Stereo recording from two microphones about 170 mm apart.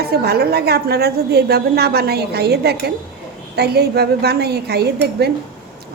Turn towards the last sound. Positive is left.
turn(degrees=-75)  # may be behind; listen again after turning